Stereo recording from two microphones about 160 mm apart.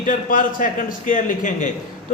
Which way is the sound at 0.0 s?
55° left (ahead or behind).